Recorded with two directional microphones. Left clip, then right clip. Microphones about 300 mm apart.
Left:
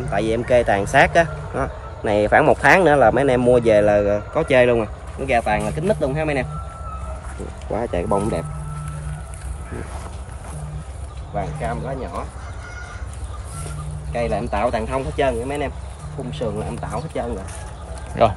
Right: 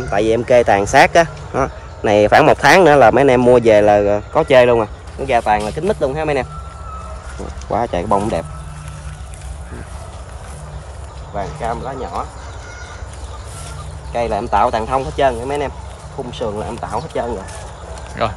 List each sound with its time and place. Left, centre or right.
0.1 s speech: centre
7.7 s speech: right
11.3 s speech: centre
14.1 s speech: centre
18.2 s speech: centre